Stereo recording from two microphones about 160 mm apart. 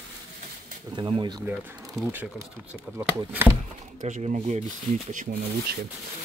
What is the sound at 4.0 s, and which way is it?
Speech, 50° right (ahead or behind).